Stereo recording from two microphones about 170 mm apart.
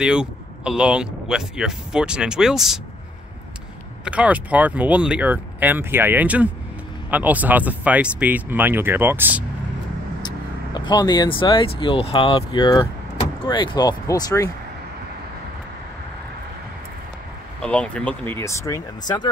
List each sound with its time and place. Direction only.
0.0 s speech: 5° right (ahead or behind)
4.0 s speech: 5° right (ahead or behind)
10.2 s speech: 25° left (ahead or behind)
17.6 s speech: 5° left (ahead or behind)